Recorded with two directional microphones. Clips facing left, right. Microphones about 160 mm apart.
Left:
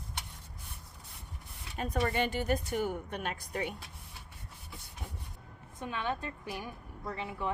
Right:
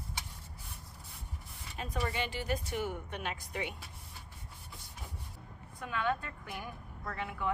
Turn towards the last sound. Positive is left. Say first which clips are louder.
# left 1 dB
turn(degrees=20)  # may be behind; listen again after turning